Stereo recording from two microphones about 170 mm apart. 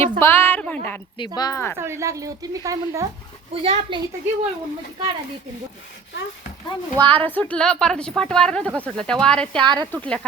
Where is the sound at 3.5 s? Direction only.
35° right (ahead or behind).